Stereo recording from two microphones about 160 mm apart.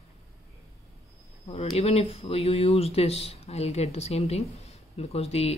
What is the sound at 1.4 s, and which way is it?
Speech, 40° left (ahead or behind).